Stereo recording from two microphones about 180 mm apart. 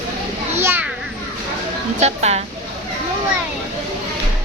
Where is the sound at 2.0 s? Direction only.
35° right (ahead or behind).